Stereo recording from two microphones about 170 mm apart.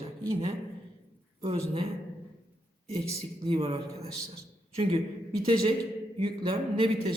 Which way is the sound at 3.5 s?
35° right (ahead or behind).